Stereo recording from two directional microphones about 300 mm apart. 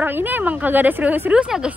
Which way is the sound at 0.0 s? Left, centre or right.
Centre.